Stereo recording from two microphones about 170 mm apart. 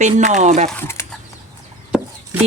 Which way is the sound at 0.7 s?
15° left (ahead or behind).